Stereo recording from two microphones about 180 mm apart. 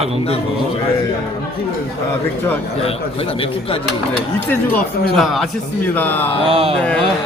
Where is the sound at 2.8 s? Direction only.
30° left (ahead or behind).